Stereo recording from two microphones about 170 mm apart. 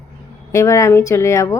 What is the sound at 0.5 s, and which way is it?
Speech, 15° left (ahead or behind).